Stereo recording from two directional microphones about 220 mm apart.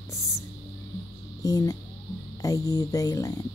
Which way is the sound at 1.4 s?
15° left (ahead or behind).